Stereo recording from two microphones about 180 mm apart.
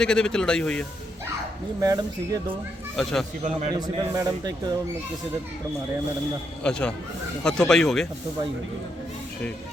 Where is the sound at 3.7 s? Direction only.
20° right (ahead or behind).